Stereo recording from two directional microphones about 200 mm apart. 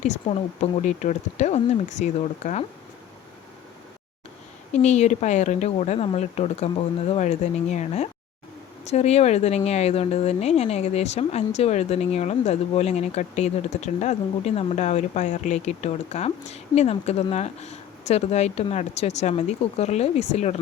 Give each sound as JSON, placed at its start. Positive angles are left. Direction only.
{"t": 0.0, "sound": "speech", "side_deg": 35}
{"t": 4.7, "sound": "speech", "side_deg": 35}